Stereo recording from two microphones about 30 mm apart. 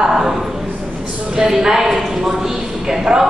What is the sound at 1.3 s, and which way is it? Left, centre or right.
Speech, centre.